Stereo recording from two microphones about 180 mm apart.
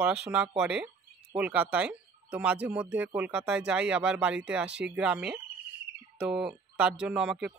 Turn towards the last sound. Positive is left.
turn(degrees=-5)  # may be behind; listen again after turning